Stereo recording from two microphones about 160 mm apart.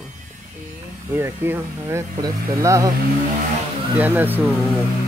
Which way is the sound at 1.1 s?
15° right (ahead or behind).